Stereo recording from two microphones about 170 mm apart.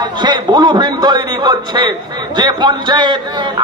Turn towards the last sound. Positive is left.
turn(degrees=-25)  # may be behind; listen again after turning